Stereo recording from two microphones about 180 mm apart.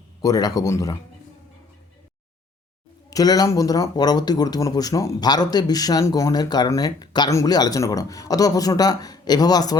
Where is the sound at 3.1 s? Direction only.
20° left (ahead or behind).